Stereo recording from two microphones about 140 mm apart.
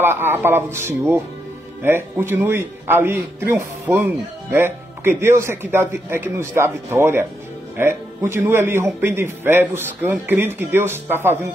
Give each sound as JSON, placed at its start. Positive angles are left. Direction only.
{"t": 0.0, "sound": "speech", "side_deg": -15}